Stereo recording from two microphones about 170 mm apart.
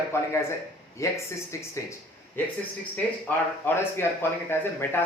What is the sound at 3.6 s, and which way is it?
Speech, 15° left (ahead or behind).